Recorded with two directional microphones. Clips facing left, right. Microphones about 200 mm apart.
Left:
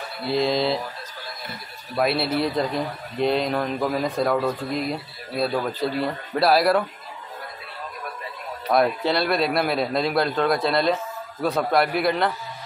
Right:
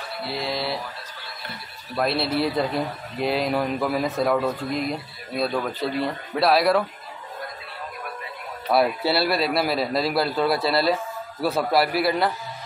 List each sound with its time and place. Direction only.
0.3 s mantra: 20° left (ahead or behind)
2.0 s a man's voice: 5° left (ahead or behind)
8.6 s a man's voice: 10° right (ahead or behind)